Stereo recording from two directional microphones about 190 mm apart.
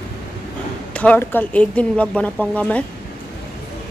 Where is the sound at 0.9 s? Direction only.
5° left (ahead or behind).